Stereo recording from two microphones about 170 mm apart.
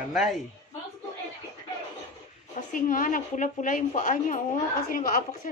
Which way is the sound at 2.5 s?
50° left (ahead or behind).